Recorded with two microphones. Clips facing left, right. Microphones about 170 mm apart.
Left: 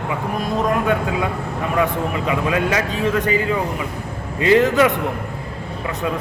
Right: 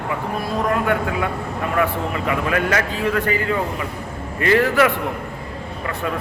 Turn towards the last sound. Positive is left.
turn(degrees=20)  # may be behind; listen again after turning